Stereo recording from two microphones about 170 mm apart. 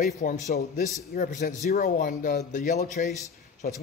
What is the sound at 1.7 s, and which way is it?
Speech, 55° left (ahead or behind).